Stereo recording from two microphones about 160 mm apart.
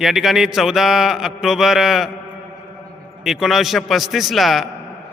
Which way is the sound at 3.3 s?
Centre (ahead or behind).